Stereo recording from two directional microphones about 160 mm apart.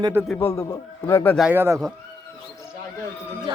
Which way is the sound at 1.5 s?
15° right (ahead or behind).